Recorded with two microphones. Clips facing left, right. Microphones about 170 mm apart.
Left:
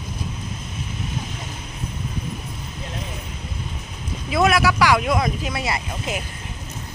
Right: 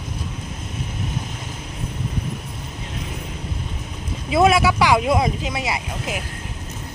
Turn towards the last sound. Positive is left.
turn(degrees=-10)  # may be behind; listen again after turning